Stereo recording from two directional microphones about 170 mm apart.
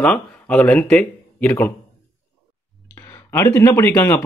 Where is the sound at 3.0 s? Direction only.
15° left (ahead or behind).